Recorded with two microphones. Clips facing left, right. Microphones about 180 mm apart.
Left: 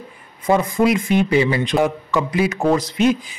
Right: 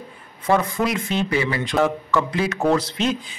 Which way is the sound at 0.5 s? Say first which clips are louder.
Left 4 dB; 10° left (ahead or behind).